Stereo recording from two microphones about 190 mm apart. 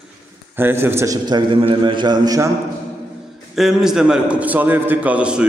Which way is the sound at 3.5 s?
Centre (ahead or behind).